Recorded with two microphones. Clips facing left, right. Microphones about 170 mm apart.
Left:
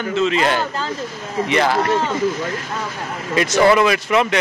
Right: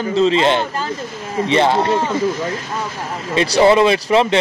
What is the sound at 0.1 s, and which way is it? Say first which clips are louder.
A man's voice: right 4 dB; 30° right (ahead or behind).